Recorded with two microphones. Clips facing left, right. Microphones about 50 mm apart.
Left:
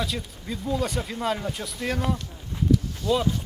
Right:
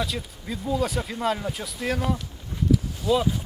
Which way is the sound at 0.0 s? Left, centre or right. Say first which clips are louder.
Right 1 dB; centre.